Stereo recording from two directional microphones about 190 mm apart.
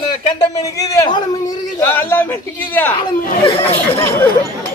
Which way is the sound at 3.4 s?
30° left (ahead or behind).